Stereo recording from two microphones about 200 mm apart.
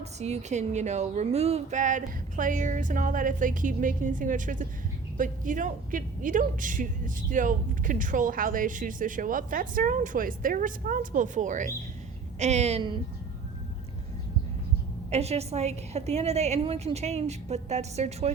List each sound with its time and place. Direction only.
0.0 s a woman's voice: 35° right (ahead or behind)
15.1 s a woman's voice: 30° right (ahead or behind)